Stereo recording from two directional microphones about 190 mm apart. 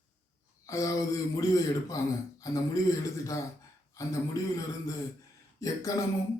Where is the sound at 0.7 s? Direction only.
15° left (ahead or behind).